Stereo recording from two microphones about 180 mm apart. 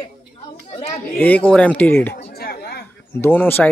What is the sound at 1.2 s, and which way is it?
Speech, 10° left (ahead or behind).